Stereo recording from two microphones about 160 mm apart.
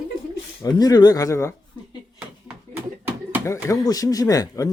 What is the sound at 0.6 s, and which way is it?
Speech, 25° left (ahead or behind).